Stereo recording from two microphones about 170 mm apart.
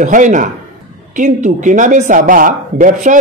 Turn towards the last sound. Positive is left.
turn(degrees=-50)  # may be behind; listen again after turning